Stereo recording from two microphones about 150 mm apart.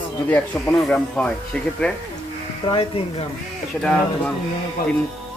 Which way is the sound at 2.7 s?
40° left (ahead or behind).